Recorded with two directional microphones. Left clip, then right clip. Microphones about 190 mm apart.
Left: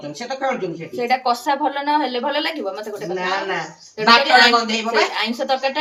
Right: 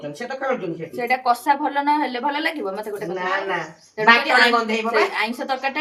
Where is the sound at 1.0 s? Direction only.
25° right (ahead or behind).